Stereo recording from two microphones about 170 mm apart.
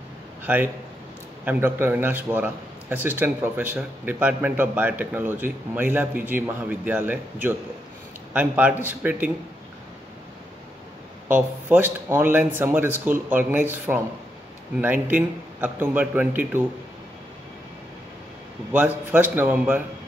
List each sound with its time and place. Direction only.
0.4 s a man's voice: 10° right (ahead or behind)
11.2 s a man's voice: 10° right (ahead or behind)
18.7 s a man's voice: 10° right (ahead or behind)